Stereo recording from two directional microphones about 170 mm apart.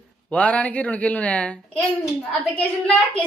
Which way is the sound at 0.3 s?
5° left (ahead or behind).